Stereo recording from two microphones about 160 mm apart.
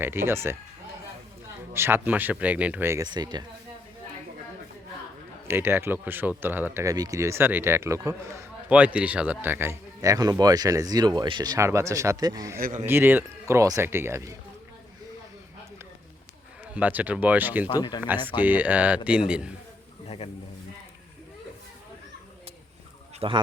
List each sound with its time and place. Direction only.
0.0 s speech: 15° right (ahead or behind)
1.7 s speech: 15° right (ahead or behind)
3.1 s speech: 25° right (ahead or behind)
5.5 s speech: 15° right (ahead or behind)
8.7 s speech: 10° right (ahead or behind); by 12.5 s 25° right (ahead or behind)
12.5 s speech: 60° right (ahead or behind)
12.8 s speech: 10° right (ahead or behind)
16.7 s speech: 10° right (ahead or behind)
17.7 s speech: 25° left (ahead or behind)
18.3 s a man's voice: 10° right (ahead or behind)
20.1 s a man's voice: 35° left (ahead or behind)
23.2 s a man's voice: 40° right (ahead or behind)